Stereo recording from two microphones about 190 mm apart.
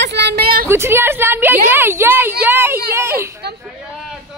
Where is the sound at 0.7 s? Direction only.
15° right (ahead or behind).